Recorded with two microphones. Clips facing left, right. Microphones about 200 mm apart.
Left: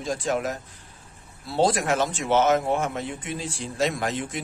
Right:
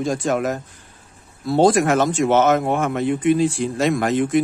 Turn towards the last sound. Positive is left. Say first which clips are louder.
# right 11 dB
turn(degrees=-55)  # may be behind; listen again after turning